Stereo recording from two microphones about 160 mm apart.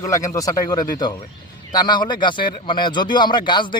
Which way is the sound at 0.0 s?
20° left (ahead or behind).